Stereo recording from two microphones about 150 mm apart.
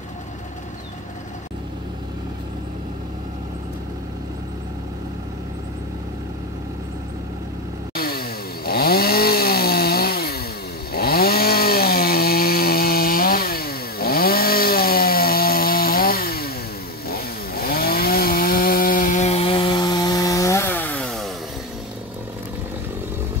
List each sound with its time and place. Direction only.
7.9 s chainsaw: 90° left; by 21.3 s 5° left (ahead or behind)